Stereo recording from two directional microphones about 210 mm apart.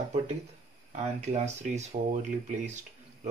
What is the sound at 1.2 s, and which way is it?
Speech, 35° right (ahead or behind).